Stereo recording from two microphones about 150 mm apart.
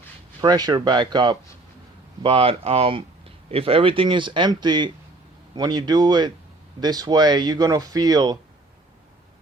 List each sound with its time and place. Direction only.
0.4 s speech: 30° right (ahead or behind)